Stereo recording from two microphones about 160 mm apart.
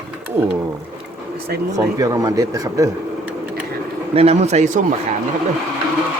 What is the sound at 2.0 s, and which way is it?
Speech, 20° right (ahead or behind).